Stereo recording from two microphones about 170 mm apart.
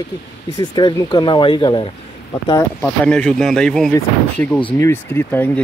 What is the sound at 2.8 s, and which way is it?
Speech, 5° left (ahead or behind).